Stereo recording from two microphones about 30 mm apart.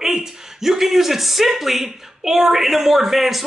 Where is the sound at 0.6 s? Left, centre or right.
Centre.